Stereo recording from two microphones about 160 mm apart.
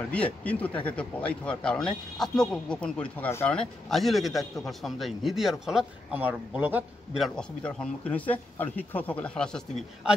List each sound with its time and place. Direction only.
0.1 s speech: 10° left (ahead or behind); by 7.2 s 10° right (ahead or behind)
7.2 s speech: 5° left (ahead or behind)